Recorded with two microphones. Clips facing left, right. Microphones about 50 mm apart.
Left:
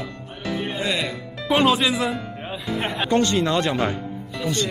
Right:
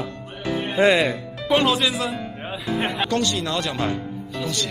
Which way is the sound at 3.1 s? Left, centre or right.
Left.